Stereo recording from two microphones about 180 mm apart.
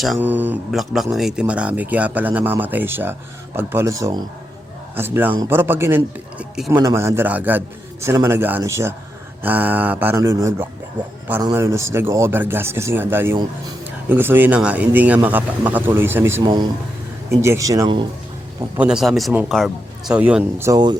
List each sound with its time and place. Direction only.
0.0 s speech: 5° right (ahead or behind); by 18.0 s 20° right (ahead or behind)
18.8 s speech: 5° right (ahead or behind); by 21.0 s 20° right (ahead or behind)